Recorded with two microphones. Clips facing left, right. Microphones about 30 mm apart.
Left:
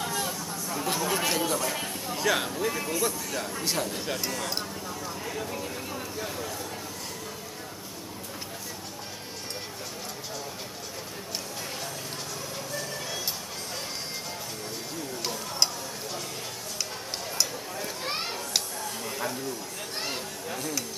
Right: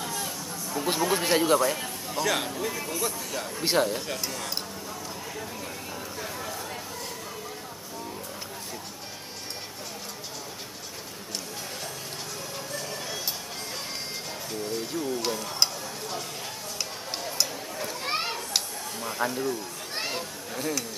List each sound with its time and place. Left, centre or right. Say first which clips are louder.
0.0 s chatter: left 2 dB; centre
0.8 s speech: right 3 dB; centre
1.8 s speech: right 1 dB; centre
3.6 s speech: right 8 dB; right
4.1 s speech: left 2 dB; centre
15.2 s tick-tock: right 1 dB; centre
17.2 s a sound: right 1 dB; centre
19.0 s speech: right 6 dB; centre
20.1 s chatter: even; centre